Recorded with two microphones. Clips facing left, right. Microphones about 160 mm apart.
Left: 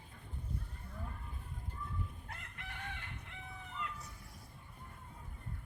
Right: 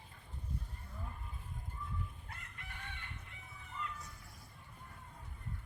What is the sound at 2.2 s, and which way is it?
Chicken, 65° left (ahead or behind).